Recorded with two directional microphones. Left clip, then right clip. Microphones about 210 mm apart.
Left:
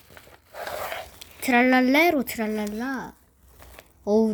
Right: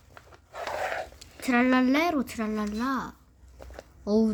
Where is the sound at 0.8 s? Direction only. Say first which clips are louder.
Right 1 dB; 15° left (ahead or behind).